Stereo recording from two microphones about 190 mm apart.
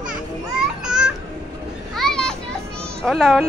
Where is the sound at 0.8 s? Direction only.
5° right (ahead or behind).